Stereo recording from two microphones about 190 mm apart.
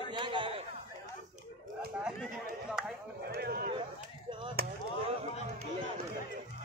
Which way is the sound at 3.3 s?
55° right (ahead or behind).